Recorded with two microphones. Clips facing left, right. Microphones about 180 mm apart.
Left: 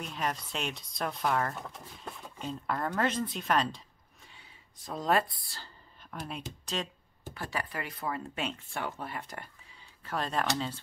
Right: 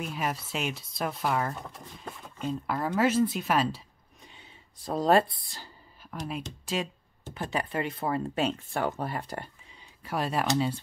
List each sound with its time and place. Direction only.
0.0 s speech: 5° right (ahead or behind)
4.2 s a sound: 20° right (ahead or behind)
4.8 s speech: 35° right (ahead or behind)
6.0 s speech: centre (ahead or behind)
7.2 s speech: 20° right (ahead or behind)
10.0 s speech: 10° right (ahead or behind)